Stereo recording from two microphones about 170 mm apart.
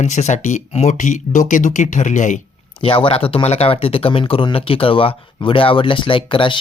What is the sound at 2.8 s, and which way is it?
Speech, 30° left (ahead or behind).